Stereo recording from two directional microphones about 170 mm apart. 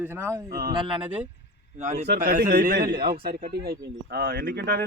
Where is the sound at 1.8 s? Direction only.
45° right (ahead or behind).